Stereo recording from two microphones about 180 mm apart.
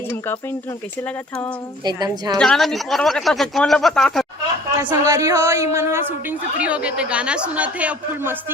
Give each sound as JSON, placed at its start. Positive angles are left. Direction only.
{"t": 1.0, "sound": "speech", "side_deg": 5}
{"t": 1.8, "sound": "a woman's voice", "side_deg": -25}
{"t": 2.4, "sound": "speech", "side_deg": 5}
{"t": 4.8, "sound": "speech", "side_deg": -15}